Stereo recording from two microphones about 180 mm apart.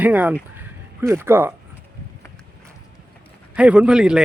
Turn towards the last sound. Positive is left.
turn(degrees=-5)  # may be behind; listen again after turning